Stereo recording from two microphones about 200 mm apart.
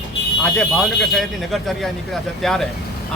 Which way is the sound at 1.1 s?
Centre (ahead or behind).